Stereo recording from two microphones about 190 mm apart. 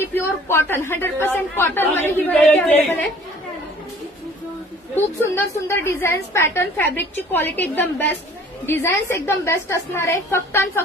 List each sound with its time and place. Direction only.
0.1 s a woman's voice: 15° left (ahead or behind)
5.2 s a woman's voice: 15° left (ahead or behind)